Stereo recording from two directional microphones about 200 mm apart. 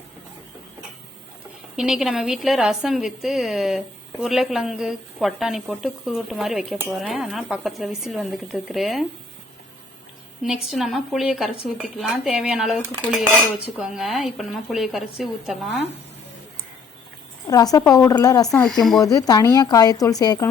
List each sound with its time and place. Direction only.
1.7 s a woman's voice: centre (ahead or behind)
10.4 s a woman's voice: centre (ahead or behind)
17.5 s a woman's voice: 20° left (ahead or behind)
18.5 s a woman's voice: centre (ahead or behind)
19.1 s speech: 20° left (ahead or behind)